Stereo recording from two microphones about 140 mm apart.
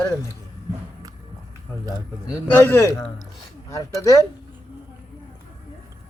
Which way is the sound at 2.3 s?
20° left (ahead or behind).